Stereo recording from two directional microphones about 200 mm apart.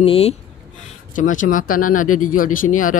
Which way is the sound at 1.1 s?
40° left (ahead or behind).